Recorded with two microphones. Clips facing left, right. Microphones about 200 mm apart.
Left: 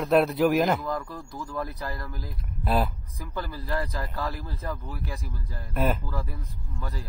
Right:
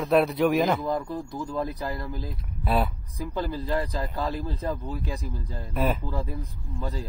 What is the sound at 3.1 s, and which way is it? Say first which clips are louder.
Speech: right 5 dB; 20° right (ahead or behind).